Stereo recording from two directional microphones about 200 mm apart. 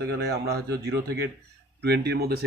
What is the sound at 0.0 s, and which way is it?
Speech, 55° right (ahead or behind).